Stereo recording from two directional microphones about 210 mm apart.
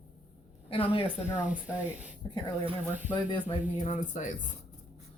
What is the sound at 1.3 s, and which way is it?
Speech, 5° right (ahead or behind).